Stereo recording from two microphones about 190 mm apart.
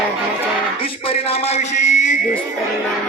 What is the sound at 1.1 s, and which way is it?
A man's voice, 30° left (ahead or behind).